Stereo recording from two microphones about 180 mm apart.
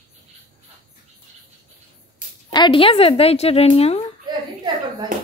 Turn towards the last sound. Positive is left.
turn(degrees=-25)  # may be behind; listen again after turning